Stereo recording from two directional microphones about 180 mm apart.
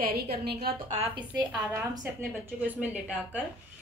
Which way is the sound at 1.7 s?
10° right (ahead or behind).